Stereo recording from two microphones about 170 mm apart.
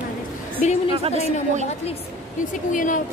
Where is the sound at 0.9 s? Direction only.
35° right (ahead or behind).